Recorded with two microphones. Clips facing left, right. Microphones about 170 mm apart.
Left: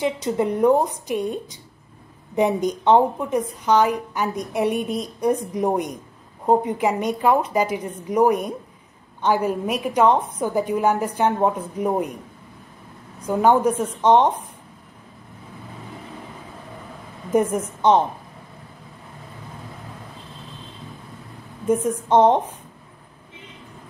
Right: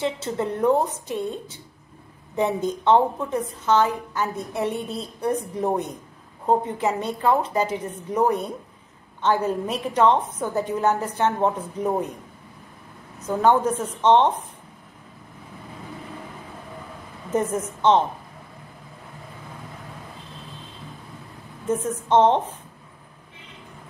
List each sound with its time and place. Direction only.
0.0 s a woman's voice: 15° left (ahead or behind)
13.2 s a woman's voice: 10° left (ahead or behind)
17.3 s a woman's voice: 10° left (ahead or behind)
21.6 s a woman's voice: 10° left (ahead or behind)